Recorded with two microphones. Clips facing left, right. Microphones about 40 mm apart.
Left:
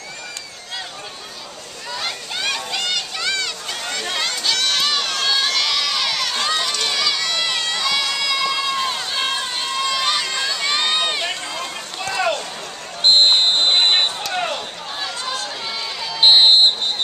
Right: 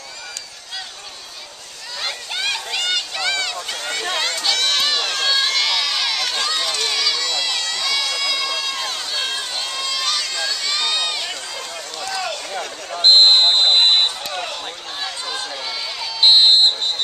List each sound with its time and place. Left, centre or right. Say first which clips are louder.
2.0 s a sound: right 1 dB; centre
6.6 s run: even; centre; by 12.4 s left
13.0 s basketball bounce: right 2 dB; centre
14.3 s run: left 4 dB; left
15.0 s chatter: left 2 dB; centre
16.0 s a sound: left 1 dB; centre